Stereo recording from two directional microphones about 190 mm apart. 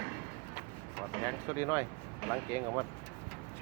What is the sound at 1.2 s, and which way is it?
Speech, 15° left (ahead or behind).